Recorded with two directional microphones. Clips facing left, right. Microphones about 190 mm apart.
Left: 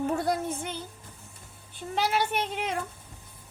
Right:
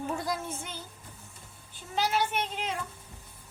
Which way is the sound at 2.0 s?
60° left (ahead or behind).